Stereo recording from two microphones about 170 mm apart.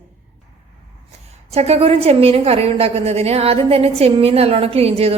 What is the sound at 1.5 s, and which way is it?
A woman's voice, 35° right (ahead or behind).